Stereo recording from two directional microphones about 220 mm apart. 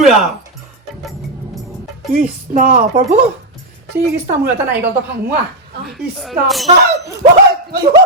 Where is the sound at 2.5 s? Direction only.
35° right (ahead or behind).